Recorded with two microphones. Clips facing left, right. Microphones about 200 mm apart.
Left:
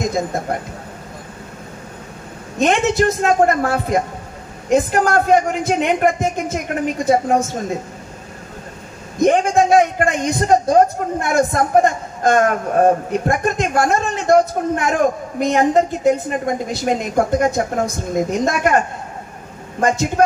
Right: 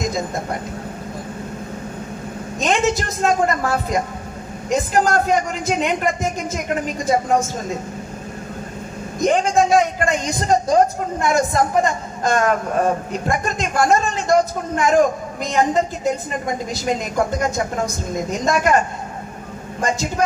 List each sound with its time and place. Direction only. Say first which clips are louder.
0.0 s a sound: left 3 dB; 60° left (ahead or behind)
2.6 s a man's voice: left 4 dB; 60° left (ahead or behind)
9.2 s a man's voice: left 3 dB; 55° left (ahead or behind)
19.8 s a man's voice: left 5 dB; 55° left (ahead or behind)